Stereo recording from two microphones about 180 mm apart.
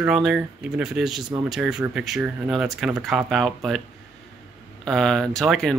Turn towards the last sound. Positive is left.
turn(degrees=5)  # may be behind; listen again after turning